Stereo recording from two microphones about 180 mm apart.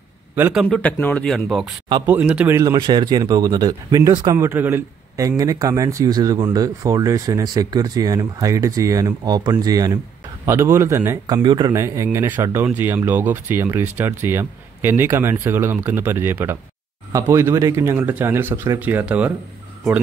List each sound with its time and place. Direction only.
0.4 s speech: 5° right (ahead or behind)
0.7 s a man's voice: 5° left (ahead or behind)